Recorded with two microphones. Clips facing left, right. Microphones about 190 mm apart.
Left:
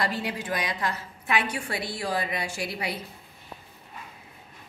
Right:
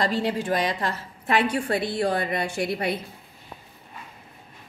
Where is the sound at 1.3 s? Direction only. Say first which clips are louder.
Right 6 dB; 55° right (ahead or behind).